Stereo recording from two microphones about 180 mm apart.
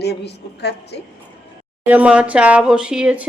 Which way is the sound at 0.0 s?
65° left (ahead or behind).